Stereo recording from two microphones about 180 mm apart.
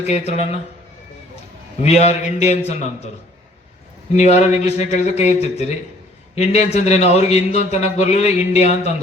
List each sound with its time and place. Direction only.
0.0 s a man's voice: 35° left (ahead or behind)
1.8 s a man's voice: 35° left (ahead or behind)
4.2 s a man's voice: 40° left (ahead or behind)